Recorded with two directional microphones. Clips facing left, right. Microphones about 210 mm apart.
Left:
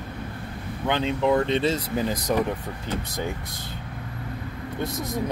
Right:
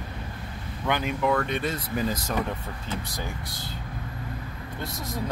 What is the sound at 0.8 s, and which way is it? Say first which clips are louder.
Speech: left 3 dB; 25° left (ahead or behind).